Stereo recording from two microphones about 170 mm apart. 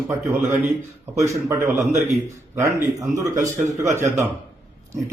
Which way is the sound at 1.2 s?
15° right (ahead or behind).